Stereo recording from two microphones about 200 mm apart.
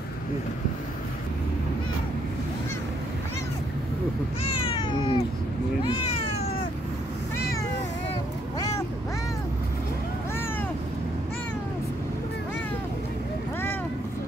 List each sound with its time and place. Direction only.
4.4 s cat: 25° left (ahead or behind)
8.5 s quack: 15° left (ahead or behind)